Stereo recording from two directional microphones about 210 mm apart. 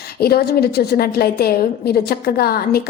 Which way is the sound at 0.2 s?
50° left (ahead or behind).